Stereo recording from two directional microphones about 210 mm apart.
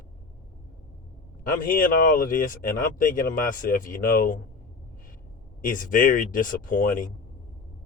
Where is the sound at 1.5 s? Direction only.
40° left (ahead or behind).